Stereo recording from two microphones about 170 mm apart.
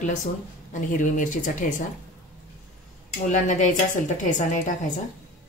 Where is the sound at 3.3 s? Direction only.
45° left (ahead or behind).